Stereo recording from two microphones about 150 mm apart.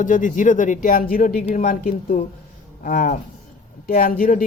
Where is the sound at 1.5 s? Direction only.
55° left (ahead or behind).